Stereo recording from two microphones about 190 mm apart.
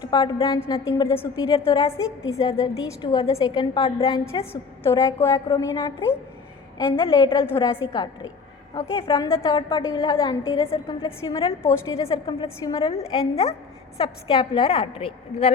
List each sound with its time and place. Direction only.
0.0 s a woman's voice: 20° left (ahead or behind)
4.9 s a woman's voice: 15° left (ahead or behind)
12.9 s a woman's voice: 30° left (ahead or behind)